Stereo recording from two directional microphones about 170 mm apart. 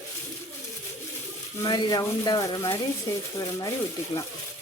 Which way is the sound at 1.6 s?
25° left (ahead or behind).